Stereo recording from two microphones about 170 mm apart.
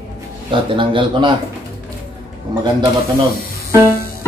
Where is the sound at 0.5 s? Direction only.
30° right (ahead or behind).